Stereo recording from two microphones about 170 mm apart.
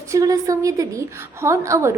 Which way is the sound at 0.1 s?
20° right (ahead or behind).